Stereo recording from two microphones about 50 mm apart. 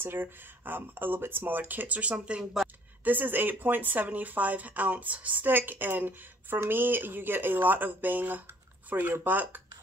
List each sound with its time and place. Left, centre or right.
0.0 s speech: right; by 2.4 s centre
3.0 s speech: right